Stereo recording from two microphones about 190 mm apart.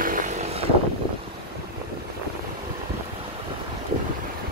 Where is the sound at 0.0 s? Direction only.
45° right (ahead or behind).